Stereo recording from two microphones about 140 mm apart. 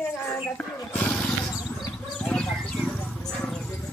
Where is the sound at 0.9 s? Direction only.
5° left (ahead or behind).